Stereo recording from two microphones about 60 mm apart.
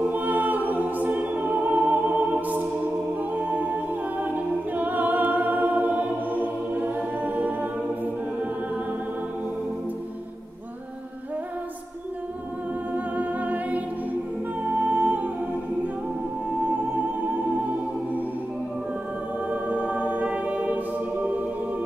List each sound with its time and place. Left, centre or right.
0.1 s music: right
3.2 s a capella: right
4.7 s music: right
12.9 s music: right
14.8 s humming: right
16.4 s music: right
19.5 s choir: right